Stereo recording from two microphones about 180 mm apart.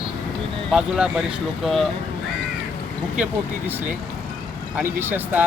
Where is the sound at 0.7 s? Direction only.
5° right (ahead or behind).